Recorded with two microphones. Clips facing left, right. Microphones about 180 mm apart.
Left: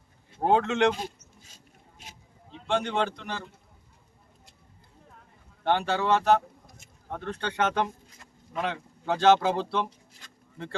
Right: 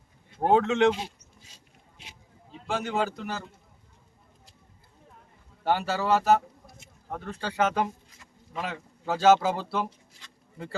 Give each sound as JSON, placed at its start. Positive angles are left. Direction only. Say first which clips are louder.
{"t": 0.3, "sound": "speech", "louder": "right 1 dB", "side_deg": 0}
{"t": 2.5, "sound": "speech", "louder": "left 2 dB", "side_deg": -5}
{"t": 5.6, "sound": "speech", "louder": "left 1 dB", "side_deg": -5}
{"t": 10.2, "sound": "a sound", "louder": "left 1 dB", "side_deg": 45}